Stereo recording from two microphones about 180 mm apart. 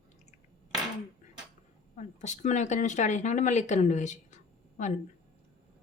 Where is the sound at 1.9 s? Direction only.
40° left (ahead or behind).